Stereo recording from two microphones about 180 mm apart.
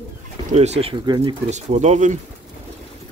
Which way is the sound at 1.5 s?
40° right (ahead or behind).